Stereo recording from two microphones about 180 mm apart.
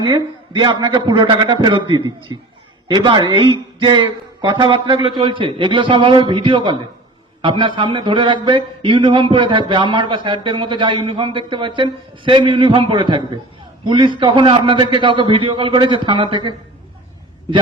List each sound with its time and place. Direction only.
0.0 s speech: 25° right (ahead or behind)